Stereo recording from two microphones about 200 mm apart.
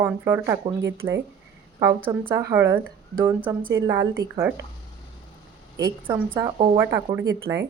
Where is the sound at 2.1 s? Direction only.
20° right (ahead or behind).